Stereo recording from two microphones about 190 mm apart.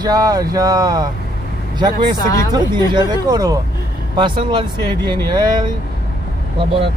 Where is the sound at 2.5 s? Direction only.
20° right (ahead or behind).